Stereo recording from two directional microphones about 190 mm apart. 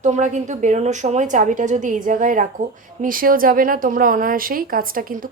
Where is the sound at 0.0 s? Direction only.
40° right (ahead or behind).